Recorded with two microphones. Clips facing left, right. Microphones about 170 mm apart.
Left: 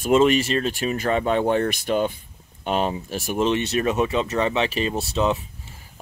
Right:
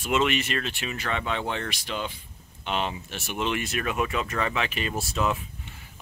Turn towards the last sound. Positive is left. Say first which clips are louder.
# left 5 dB
turn(degrees=25)  # may be behind; listen again after turning